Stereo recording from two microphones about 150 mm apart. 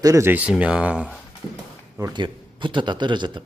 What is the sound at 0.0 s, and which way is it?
Speech, 20° right (ahead or behind).